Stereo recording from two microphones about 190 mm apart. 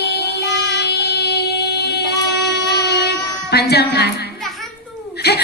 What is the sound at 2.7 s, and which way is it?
Music, 60° left (ahead or behind).